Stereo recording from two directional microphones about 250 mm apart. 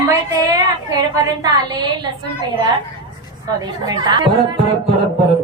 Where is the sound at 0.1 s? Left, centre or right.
Centre.